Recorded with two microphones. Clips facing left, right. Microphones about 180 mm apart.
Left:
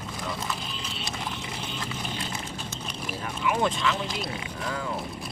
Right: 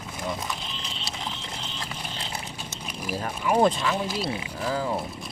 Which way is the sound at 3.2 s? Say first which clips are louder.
Right 5 dB; 35° right (ahead or behind).